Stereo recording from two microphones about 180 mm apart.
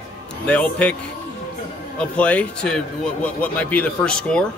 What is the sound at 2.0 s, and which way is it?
Speech, 5° left (ahead or behind).